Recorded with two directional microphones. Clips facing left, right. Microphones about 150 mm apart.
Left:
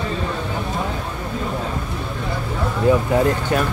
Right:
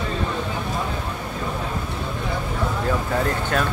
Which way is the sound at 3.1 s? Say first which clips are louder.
Left 5 dB; 15° left (ahead or behind).